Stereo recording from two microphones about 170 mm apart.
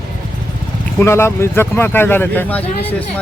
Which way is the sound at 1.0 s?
15° left (ahead or behind).